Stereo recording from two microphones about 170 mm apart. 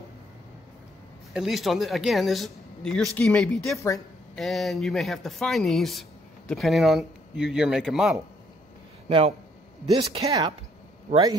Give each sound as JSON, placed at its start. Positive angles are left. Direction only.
{"t": 1.3, "sound": "speech", "side_deg": 0}
{"t": 9.8, "sound": "speech", "side_deg": -20}